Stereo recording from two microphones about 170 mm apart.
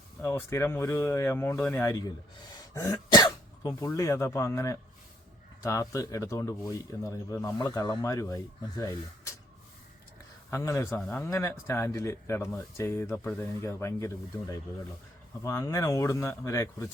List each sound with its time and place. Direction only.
0.2 s speech: 15° left (ahead or behind)
2.7 s throat clearing: 20° left (ahead or behind)
3.8 s speech: 15° left (ahead or behind)
10.5 s speech: 15° left (ahead or behind)